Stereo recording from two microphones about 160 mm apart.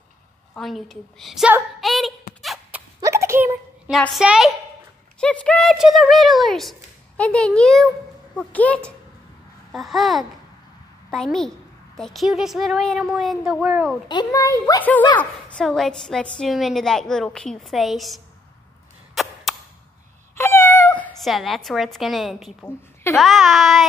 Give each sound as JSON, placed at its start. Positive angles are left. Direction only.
{"t": 0.6, "sound": "a woman's voice", "side_deg": 0}
{"t": 1.8, "sound": "a sound", "side_deg": 0}
{"t": 2.4, "sound": "dog", "side_deg": 0}
{"t": 3.0, "sound": "a sound", "side_deg": -15}
{"t": 3.9, "sound": "a woman's voice", "side_deg": 0}
{"t": 5.2, "sound": "a woman's voice", "side_deg": 5}
{"t": 14.0, "sound": "a child's voice", "side_deg": 25}
{"t": 14.8, "sound": "a child's voice", "side_deg": 10}
{"t": 20.3, "sound": "cat", "side_deg": 15}
{"t": 22.6, "sound": "a woman's voice", "side_deg": 10}